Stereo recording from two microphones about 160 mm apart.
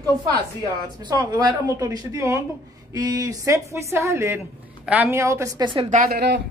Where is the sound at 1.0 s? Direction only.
25° right (ahead or behind).